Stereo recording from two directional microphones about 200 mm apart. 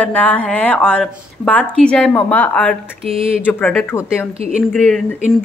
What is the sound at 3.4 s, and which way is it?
Speech, 5° left (ahead or behind).